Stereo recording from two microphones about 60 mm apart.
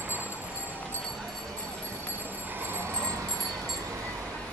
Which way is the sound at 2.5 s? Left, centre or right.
Right.